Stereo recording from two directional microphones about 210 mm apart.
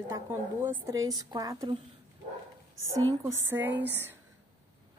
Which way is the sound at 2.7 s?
70° right (ahead or behind).